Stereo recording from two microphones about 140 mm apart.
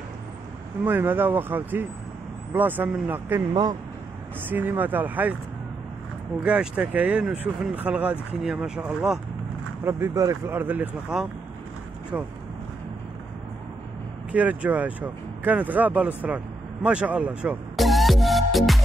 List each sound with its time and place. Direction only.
0.8 s speech: 15° right (ahead or behind)
4.5 s speech: 15° right (ahead or behind)
6.4 s speech: 10° right (ahead or behind)
9.8 s speech: 20° right (ahead or behind)
14.3 s speech: 10° right (ahead or behind)